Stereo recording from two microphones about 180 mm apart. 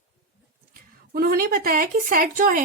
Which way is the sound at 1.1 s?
55° right (ahead or behind).